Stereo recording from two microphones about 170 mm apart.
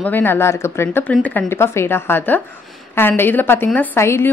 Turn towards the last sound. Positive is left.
turn(degrees=15)  # may be behind; listen again after turning